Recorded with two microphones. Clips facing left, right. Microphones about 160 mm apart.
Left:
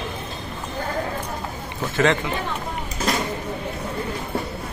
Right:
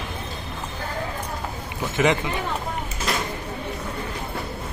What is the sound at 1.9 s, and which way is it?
Speech, 15° right (ahead or behind).